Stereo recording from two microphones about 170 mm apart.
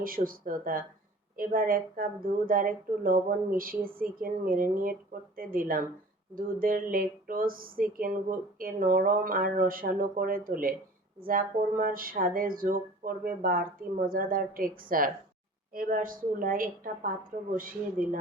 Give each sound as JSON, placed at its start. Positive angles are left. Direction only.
{"t": 0.0, "sound": "a woman's voice", "side_deg": -55}